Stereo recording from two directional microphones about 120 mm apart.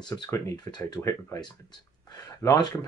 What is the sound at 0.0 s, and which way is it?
Speech, 35° left (ahead or behind).